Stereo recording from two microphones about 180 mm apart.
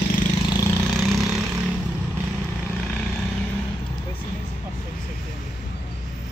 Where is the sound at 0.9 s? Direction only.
Centre (ahead or behind).